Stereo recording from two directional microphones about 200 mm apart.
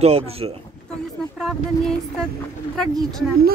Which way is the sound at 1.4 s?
Centre (ahead or behind).